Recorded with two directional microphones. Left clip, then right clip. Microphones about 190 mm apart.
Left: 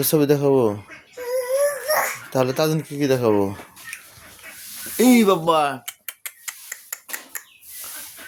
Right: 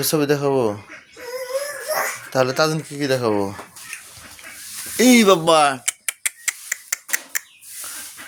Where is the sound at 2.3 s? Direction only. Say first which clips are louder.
Right 4 dB; 25° left (ahead or behind).